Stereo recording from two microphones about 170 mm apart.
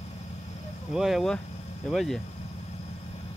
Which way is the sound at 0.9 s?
Centre (ahead or behind).